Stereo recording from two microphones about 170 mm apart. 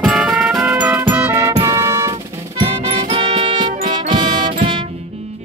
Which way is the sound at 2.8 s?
35° right (ahead or behind).